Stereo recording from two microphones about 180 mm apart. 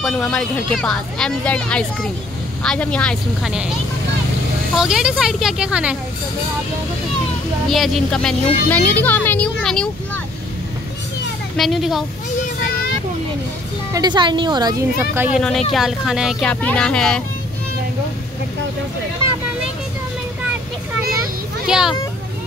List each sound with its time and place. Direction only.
0.0 s speech: centre (ahead or behind)
4.7 s speech: 5° right (ahead or behind)
7.7 s speech: centre (ahead or behind)
11.5 s speech: centre (ahead or behind)
13.9 s speech: 25° right (ahead or behind)
15.3 s speech: centre (ahead or behind)
21.6 s speech: 5° right (ahead or behind)